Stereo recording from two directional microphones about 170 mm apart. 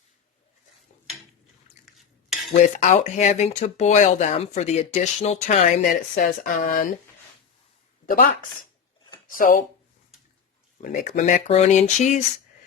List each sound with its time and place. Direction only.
1.8 s cutlery: centre (ahead or behind)
2.5 s speech: 45° left (ahead or behind)
5.9 s speech: 55° left (ahead or behind)
8.0 s speech: 60° left (ahead or behind)
9.4 s speech: 50° left (ahead or behind)
10.8 s speech: 50° left (ahead or behind)